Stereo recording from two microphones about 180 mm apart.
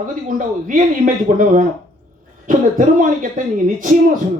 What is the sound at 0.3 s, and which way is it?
Speech, 50° right (ahead or behind).